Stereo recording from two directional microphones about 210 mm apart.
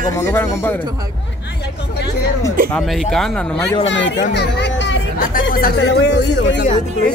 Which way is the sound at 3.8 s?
60° left (ahead or behind).